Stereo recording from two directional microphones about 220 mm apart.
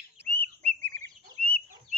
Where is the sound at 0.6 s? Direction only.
30° right (ahead or behind).